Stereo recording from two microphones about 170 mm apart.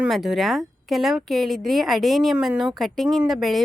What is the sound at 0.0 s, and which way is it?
Speech, centre (ahead or behind).